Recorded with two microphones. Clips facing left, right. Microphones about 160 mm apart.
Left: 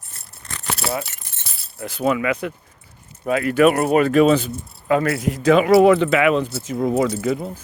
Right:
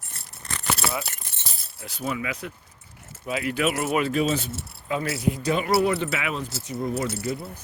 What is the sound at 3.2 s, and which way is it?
Speech, 50° left (ahead or behind).